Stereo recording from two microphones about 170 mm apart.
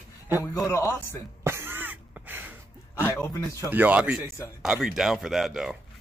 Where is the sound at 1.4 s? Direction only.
15° right (ahead or behind).